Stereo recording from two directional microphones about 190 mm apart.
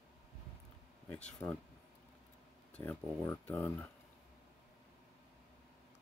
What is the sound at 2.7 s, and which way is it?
Speech, 10° left (ahead or behind).